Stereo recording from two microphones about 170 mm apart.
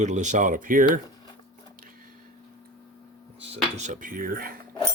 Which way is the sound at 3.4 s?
40° right (ahead or behind).